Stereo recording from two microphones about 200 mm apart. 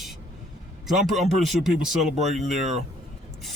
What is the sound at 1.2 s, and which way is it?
Speech, centre (ahead or behind).